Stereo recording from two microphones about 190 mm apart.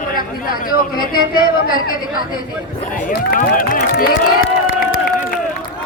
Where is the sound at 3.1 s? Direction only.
50° left (ahead or behind).